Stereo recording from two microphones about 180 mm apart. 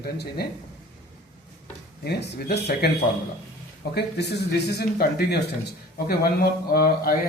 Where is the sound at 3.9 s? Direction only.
65° left (ahead or behind).